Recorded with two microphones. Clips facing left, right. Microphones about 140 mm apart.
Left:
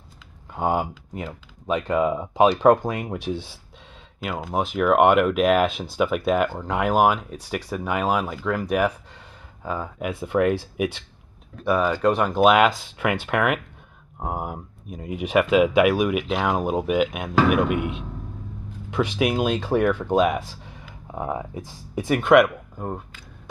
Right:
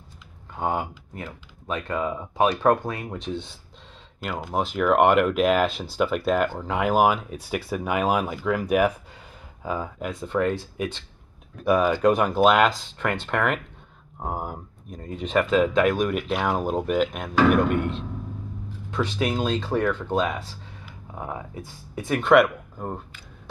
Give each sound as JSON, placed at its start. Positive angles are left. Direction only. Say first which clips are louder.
{"t": 0.6, "sound": "speech", "louder": "left 3 dB", "side_deg": 15}
{"t": 9.9, "sound": "speech", "louder": "left 6 dB", "side_deg": 10}
{"t": 11.7, "sound": "speech", "louder": "right 1 dB", "side_deg": -10}
{"t": 12.4, "sound": "speech", "louder": "left 2 dB", "side_deg": 5}
{"t": 21.1, "sound": "speech", "louder": "left 5 dB", "side_deg": 25}
{"t": 21.9, "sound": "speech", "louder": "left 2 dB", "side_deg": 10}